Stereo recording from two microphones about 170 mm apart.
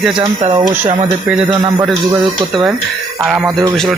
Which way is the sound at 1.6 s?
20° right (ahead or behind).